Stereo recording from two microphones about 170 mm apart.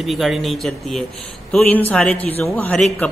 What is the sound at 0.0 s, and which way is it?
A man's voice, centre (ahead or behind).